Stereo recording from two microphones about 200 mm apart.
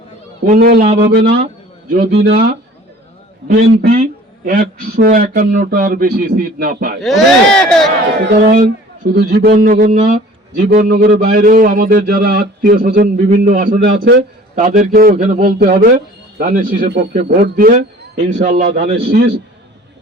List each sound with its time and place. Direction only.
0.4 s a man's voice: 40° right (ahead or behind)
1.1 s a man's voice: 55° right (ahead or behind)
3.6 s a man's voice: 45° right (ahead or behind)
7.0 s speech: centre (ahead or behind)
9.1 s a man's voice: 55° right (ahead or behind)